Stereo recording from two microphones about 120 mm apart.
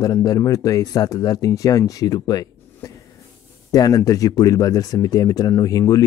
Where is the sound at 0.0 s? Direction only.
30° left (ahead or behind).